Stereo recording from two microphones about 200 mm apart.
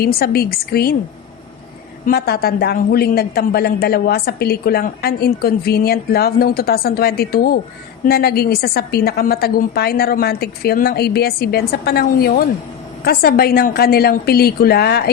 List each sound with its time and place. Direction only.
0.0 s a woman's voice: 50° left (ahead or behind)
2.0 s a woman's voice: 50° left (ahead or behind)